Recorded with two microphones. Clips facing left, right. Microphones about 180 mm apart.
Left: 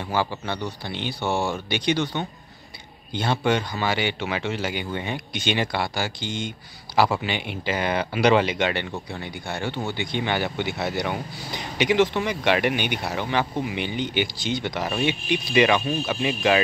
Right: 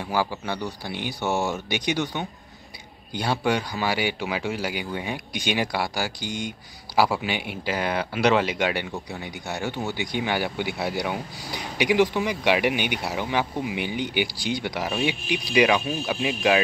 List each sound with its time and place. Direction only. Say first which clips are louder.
0.0 s speech: even; 5° right (ahead or behind)
3.1 s speech: left 1 dB; 10° right (ahead or behind)